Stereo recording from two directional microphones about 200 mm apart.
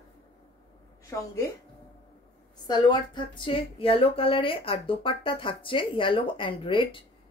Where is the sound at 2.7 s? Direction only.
20° left (ahead or behind).